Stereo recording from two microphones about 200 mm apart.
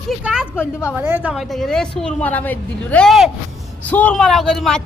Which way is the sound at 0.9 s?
10° right (ahead or behind).